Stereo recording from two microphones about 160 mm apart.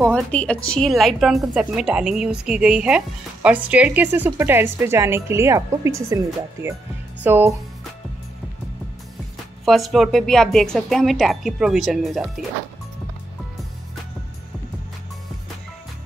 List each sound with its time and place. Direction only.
0.0 s a woman's voice: 10° left (ahead or behind); by 7.5 s 10° right (ahead or behind)
9.7 s a woman's voice: centre (ahead or behind)